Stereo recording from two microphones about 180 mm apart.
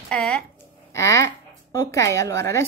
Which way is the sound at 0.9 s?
15° left (ahead or behind).